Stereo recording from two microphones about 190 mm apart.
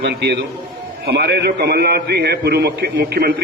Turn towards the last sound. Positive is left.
turn(degrees=-60)  # may be behind; listen again after turning